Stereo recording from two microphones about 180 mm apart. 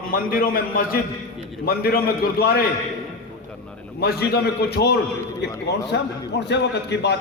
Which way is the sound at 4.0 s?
60° left (ahead or behind).